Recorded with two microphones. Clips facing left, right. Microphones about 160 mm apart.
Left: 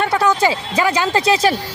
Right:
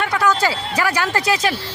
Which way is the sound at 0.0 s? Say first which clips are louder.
Left 3 dB; 30° left (ahead or behind).